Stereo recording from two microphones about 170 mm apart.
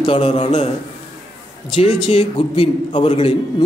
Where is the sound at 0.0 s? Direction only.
35° left (ahead or behind).